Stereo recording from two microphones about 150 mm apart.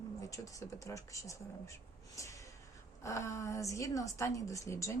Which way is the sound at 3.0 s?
20° left (ahead or behind).